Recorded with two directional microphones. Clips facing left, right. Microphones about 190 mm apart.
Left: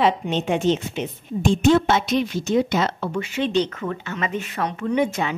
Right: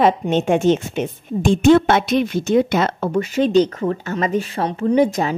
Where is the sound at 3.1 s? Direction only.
40° right (ahead or behind).